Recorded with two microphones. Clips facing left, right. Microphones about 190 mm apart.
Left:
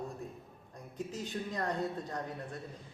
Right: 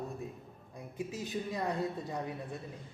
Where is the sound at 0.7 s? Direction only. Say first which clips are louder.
Right 1 dB; 10° right (ahead or behind).